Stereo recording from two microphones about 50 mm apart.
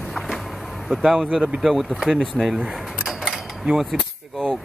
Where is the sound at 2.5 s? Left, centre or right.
Centre.